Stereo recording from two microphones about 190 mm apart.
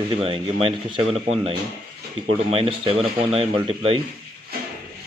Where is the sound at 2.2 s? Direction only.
30° right (ahead or behind).